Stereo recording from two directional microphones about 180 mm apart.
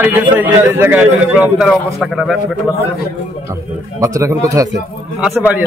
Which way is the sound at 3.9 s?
20° right (ahead or behind).